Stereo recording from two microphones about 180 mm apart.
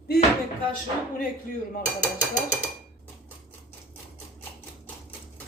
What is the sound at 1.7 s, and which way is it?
Speech, 45° left (ahead or behind).